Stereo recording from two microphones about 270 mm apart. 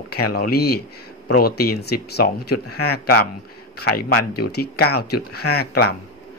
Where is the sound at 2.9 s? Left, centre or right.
Left.